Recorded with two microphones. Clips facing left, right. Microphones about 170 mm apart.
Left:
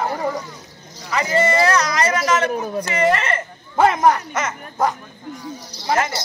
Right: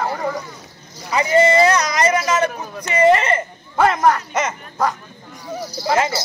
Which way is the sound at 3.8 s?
20° left (ahead or behind).